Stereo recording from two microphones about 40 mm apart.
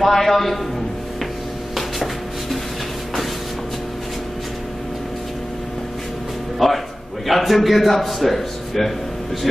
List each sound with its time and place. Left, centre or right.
0.0 s a man's voice: centre
6.6 s a man's voice: centre